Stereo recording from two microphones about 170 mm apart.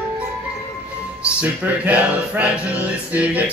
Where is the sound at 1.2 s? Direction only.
10° right (ahead or behind).